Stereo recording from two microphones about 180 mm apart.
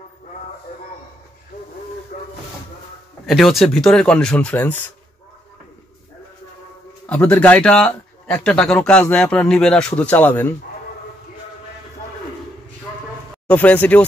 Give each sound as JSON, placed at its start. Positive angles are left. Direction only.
{"t": 2.1, "sound": "hiss", "side_deg": 50}
{"t": 3.3, "sound": "a man's voice", "side_deg": 0}
{"t": 7.1, "sound": "a man's voice", "side_deg": 5}
{"t": 13.5, "sound": "speech", "side_deg": 10}